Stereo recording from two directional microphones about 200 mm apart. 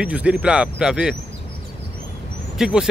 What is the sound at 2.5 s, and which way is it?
Speech, 5° right (ahead or behind).